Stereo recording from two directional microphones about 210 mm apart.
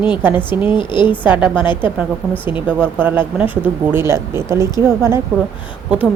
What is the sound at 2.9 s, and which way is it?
Speech, 10° right (ahead or behind).